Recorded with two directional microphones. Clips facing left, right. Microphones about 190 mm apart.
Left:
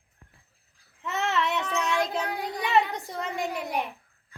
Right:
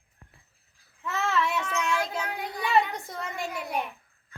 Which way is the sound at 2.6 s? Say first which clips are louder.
Even; 20° left (ahead or behind).